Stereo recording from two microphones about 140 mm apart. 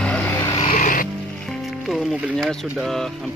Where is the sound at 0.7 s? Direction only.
70° left (ahead or behind).